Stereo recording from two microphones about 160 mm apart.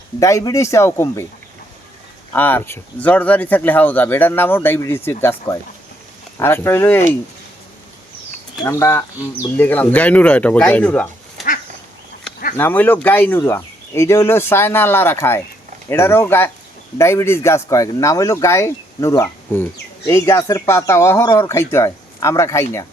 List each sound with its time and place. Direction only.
0.2 s speech: 20° left (ahead or behind)
2.3 s speech: 10° left (ahead or behind)
8.6 s speech: 15° left (ahead or behind)
12.5 s speech: 10° left (ahead or behind)